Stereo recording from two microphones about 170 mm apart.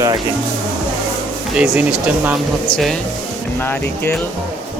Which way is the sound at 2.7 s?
30° left (ahead or behind).